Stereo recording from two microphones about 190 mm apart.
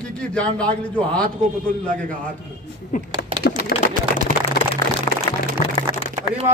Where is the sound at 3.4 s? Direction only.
60° left (ahead or behind).